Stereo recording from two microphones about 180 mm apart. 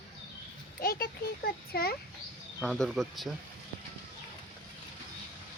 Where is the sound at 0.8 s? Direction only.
55° left (ahead or behind).